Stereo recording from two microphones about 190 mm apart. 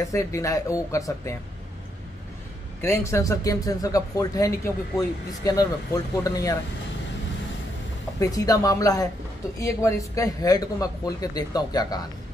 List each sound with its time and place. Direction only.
0.0 s speech: 15° left (ahead or behind)
2.8 s a man's voice: 15° left (ahead or behind)
8.2 s a man's voice: 20° left (ahead or behind)